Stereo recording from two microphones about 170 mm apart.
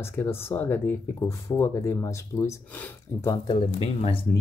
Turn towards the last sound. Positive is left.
turn(degrees=30)  # may be behind; listen again after turning